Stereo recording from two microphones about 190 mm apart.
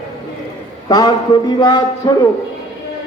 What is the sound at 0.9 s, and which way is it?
A man's voice, 20° left (ahead or behind).